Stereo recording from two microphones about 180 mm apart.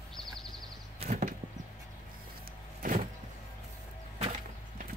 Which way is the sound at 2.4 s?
50° right (ahead or behind).